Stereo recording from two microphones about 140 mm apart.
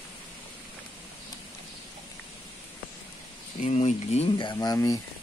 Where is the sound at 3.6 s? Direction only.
55° left (ahead or behind).